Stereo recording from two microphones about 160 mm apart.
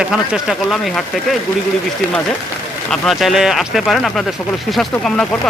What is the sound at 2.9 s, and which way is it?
Speech, centre (ahead or behind).